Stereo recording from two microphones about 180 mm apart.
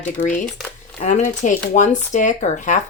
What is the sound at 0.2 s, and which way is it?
Speech, 30° left (ahead or behind).